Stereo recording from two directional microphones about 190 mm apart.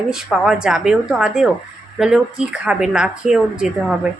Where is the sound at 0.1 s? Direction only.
5° right (ahead or behind).